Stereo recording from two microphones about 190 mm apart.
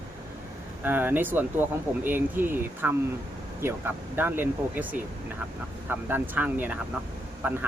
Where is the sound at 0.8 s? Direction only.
10° right (ahead or behind).